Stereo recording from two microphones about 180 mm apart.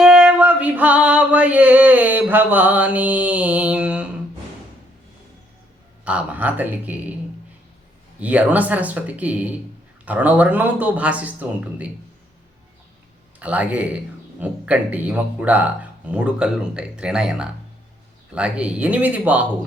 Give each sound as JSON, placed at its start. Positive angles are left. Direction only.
{"t": 0.0, "sound": "female singing", "side_deg": -5}
{"t": 6.1, "sound": "speech", "side_deg": -10}
{"t": 8.2, "sound": "speech", "side_deg": -10}
{"t": 13.4, "sound": "speech", "side_deg": -10}